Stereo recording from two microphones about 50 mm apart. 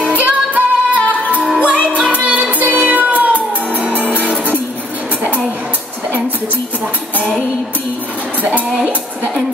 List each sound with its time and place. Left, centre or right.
0.1 s music: right